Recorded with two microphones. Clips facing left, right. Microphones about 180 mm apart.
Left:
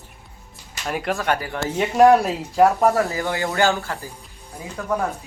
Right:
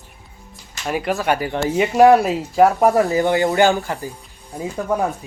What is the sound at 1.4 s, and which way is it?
Speech, 20° right (ahead or behind).